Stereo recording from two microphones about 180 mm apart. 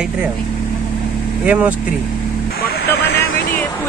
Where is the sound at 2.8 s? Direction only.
65° left (ahead or behind).